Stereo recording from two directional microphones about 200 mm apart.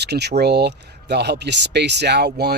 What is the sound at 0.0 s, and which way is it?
Speech, 55° right (ahead or behind).